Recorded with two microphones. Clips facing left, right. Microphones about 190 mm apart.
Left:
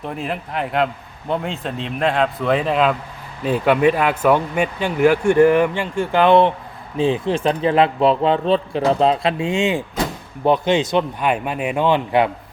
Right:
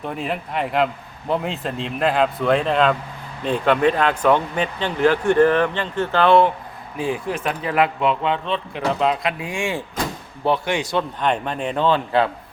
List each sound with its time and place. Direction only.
0.0 s a man's voice: centre (ahead or behind); by 11.0 s 20° left (ahead or behind)
11.2 s speech: 10° left (ahead or behind)